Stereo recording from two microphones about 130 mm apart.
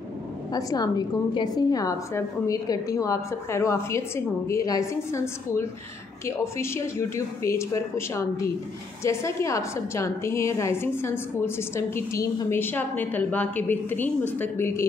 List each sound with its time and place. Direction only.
0.5 s a woman's voice: 30° left (ahead or behind)